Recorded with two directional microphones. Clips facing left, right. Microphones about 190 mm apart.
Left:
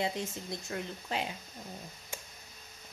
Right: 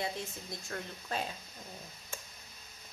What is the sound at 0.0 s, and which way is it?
Speech, 20° left (ahead or behind).